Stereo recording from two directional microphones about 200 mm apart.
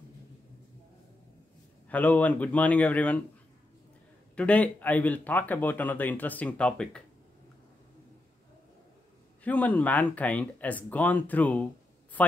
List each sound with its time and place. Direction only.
1.9 s speech: 5° left (ahead or behind)
4.4 s speech: 5° left (ahead or behind)
9.4 s speech: 5° left (ahead or behind)